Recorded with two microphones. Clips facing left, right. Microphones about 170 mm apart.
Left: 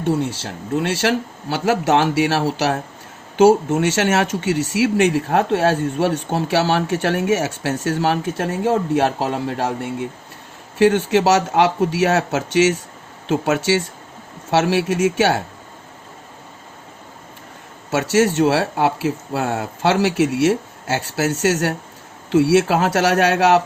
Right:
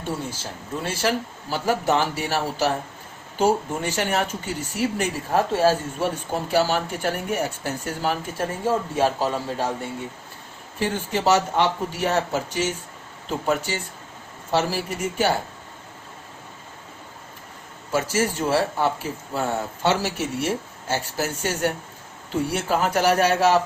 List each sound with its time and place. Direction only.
0.0 s speech: 70° left (ahead or behind)
10.8 s speech: 80° left
17.9 s speech: 75° left (ahead or behind)